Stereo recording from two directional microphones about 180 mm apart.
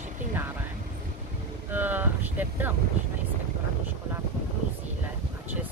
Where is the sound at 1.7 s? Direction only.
10° right (ahead or behind).